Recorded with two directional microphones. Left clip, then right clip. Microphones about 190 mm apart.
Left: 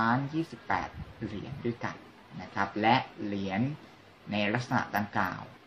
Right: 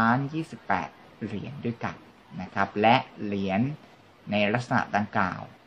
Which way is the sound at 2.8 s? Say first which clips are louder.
Right 5 dB; 60° right (ahead or behind).